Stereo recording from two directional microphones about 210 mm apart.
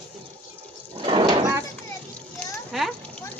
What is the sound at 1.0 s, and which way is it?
Livestock, 25° right (ahead or behind).